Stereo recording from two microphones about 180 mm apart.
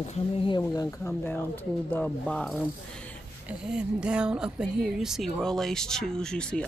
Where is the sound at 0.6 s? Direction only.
20° left (ahead or behind).